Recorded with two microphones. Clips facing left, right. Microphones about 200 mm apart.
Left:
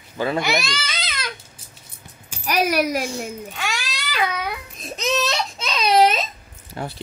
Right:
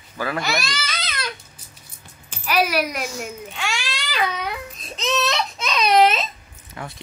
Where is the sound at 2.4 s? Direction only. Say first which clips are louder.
Left 1 dB; 45° left (ahead or behind).